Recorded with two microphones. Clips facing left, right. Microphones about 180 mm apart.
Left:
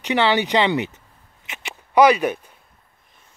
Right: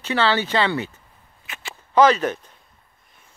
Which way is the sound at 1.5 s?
20° left (ahead or behind).